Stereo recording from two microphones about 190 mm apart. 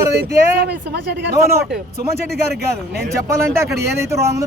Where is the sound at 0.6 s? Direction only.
60° right (ahead or behind).